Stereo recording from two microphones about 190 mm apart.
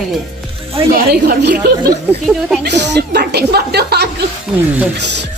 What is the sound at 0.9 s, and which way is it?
Speech, 50° right (ahead or behind).